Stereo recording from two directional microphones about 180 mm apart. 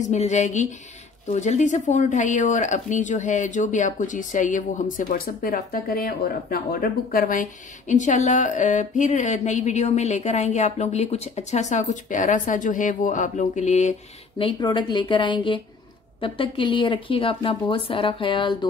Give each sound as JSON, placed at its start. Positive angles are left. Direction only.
{"t": 0.0, "sound": "speech", "side_deg": 40}
{"t": 14.4, "sound": "speech", "side_deg": 25}